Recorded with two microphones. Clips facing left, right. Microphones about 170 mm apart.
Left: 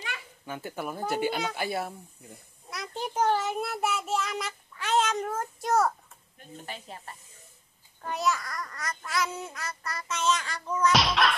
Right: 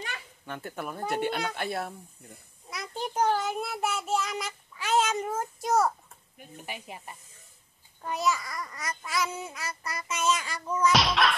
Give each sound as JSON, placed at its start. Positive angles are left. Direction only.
{"t": 0.5, "sound": "speech", "side_deg": 5}
{"t": 8.1, "sound": "a child's voice", "side_deg": 0}